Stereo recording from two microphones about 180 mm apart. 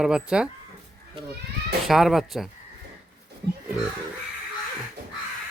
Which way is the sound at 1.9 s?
Centre (ahead or behind).